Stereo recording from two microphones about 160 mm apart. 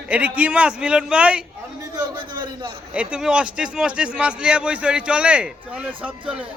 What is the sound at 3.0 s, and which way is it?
Speech, 5° right (ahead or behind).